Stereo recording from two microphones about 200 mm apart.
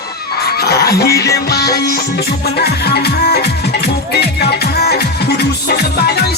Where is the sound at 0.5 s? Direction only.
50° left (ahead or behind).